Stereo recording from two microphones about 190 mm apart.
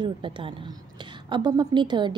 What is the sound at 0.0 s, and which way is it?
Speech, 25° right (ahead or behind).